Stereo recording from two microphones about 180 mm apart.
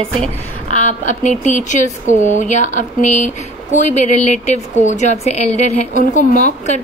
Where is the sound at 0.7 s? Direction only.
45° left (ahead or behind).